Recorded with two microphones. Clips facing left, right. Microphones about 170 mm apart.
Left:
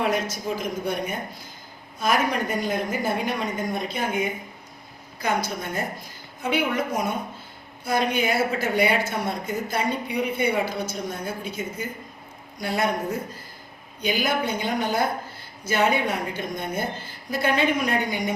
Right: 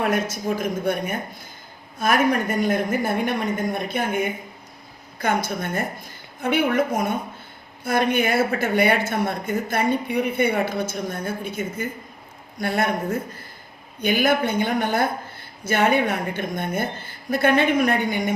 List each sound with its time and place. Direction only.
0.6 s a woman's voice: 55° right (ahead or behind)